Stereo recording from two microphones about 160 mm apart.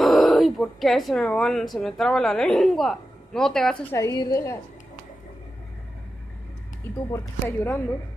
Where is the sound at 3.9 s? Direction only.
20° left (ahead or behind).